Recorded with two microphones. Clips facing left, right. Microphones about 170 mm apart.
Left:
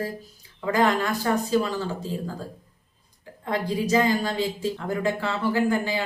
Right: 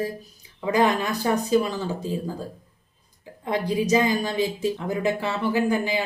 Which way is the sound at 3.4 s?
15° right (ahead or behind).